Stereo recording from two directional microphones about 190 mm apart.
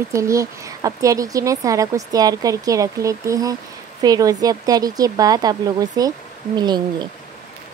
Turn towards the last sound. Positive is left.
turn(degrees=-20)  # may be behind; listen again after turning